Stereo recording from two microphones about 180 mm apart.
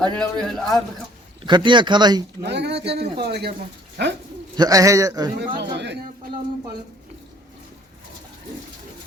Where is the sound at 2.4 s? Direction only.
70° right (ahead or behind).